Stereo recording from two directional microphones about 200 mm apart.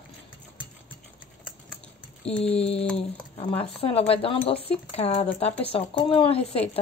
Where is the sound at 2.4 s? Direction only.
30° left (ahead or behind).